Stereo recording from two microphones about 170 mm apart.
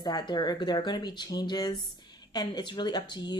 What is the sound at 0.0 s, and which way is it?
Speech, 25° left (ahead or behind).